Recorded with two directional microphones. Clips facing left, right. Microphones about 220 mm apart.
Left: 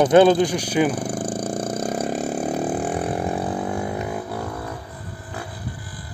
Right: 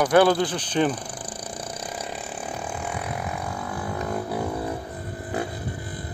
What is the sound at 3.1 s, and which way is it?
Vehicle, 30° left (ahead or behind).